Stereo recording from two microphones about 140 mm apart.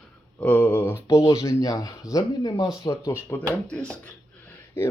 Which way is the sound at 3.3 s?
15° left (ahead or behind).